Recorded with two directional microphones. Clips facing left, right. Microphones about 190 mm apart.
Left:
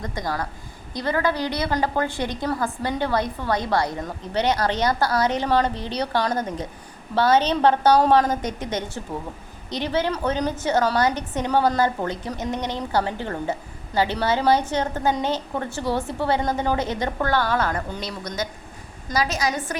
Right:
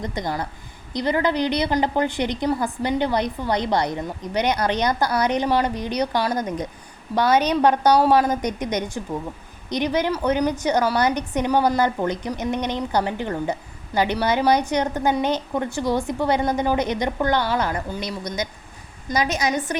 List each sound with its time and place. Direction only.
0.0 s a woman's voice: 20° right (ahead or behind)